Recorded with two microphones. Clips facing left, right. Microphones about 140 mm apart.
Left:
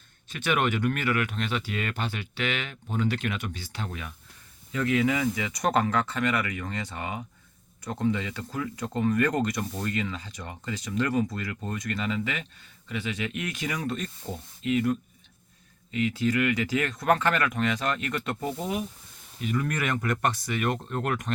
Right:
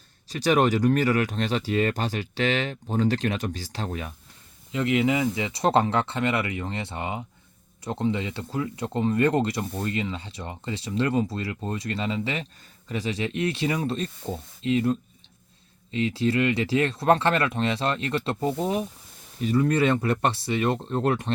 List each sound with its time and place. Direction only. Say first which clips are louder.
0.3 s speech: right 5 dB; 35° right (ahead or behind)
4.7 s speech: right 2 dB; 25° right (ahead or behind)